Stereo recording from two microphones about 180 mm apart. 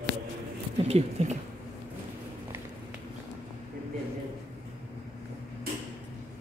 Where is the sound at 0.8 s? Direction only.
35° right (ahead or behind).